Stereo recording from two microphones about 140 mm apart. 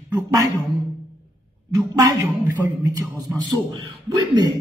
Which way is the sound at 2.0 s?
25° right (ahead or behind).